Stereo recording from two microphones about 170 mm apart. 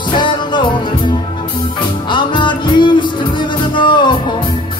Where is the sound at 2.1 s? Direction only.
25° left (ahead or behind).